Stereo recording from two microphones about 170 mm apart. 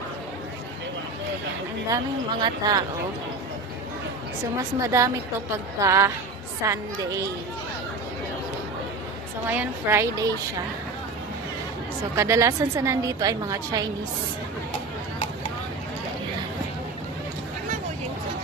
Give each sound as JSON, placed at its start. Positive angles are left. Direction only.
{"t": 2.4, "sound": "a woman's voice", "side_deg": -20}
{"t": 4.8, "sound": "a woman's voice", "side_deg": -20}
{"t": 9.5, "sound": "a woman's voice", "side_deg": -15}
{"t": 12.1, "sound": "a woman's voice", "side_deg": -15}